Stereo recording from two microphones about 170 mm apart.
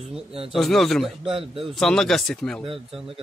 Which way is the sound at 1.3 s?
30° right (ahead or behind).